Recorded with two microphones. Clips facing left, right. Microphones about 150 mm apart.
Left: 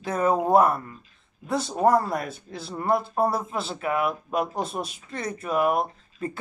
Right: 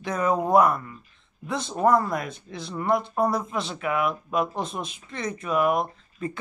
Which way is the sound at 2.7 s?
35° left (ahead or behind).